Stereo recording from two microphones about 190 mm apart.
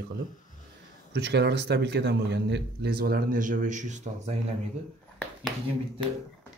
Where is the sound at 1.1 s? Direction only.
60° right (ahead or behind); by 4.3 s 40° right (ahead or behind).